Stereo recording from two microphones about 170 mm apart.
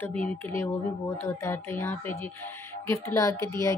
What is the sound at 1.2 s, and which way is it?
A woman's voice, 15° left (ahead or behind).